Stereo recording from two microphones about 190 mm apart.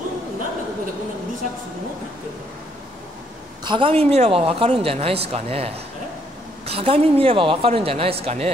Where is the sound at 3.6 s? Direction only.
25° right (ahead or behind).